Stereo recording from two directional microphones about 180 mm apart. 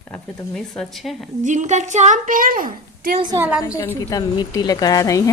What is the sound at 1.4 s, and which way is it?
A woman's voice, 40° right (ahead or behind).